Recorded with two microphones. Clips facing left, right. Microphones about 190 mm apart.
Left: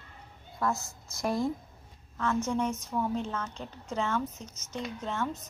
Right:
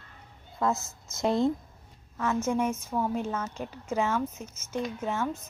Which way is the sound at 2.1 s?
15° right (ahead or behind).